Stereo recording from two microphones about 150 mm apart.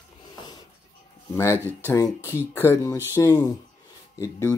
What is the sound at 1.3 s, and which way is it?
Speech, 20° left (ahead or behind).